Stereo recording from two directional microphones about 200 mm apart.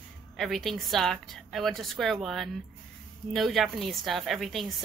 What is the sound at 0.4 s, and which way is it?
A woman's voice, centre (ahead or behind).